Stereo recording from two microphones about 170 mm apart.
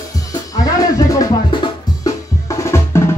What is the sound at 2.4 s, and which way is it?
Percussion, 15° left (ahead or behind).